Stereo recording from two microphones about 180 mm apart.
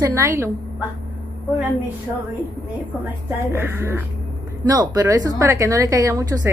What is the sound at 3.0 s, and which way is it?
A woman's voice, 15° right (ahead or behind).